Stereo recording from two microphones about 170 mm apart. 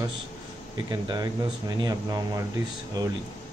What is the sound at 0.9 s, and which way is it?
Speech, 25° right (ahead or behind).